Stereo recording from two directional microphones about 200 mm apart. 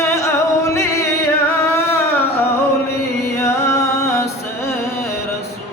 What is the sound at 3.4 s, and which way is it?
Music, 15° left (ahead or behind).